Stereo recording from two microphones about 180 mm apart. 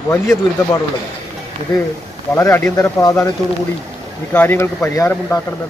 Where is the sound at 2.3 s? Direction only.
15° left (ahead or behind).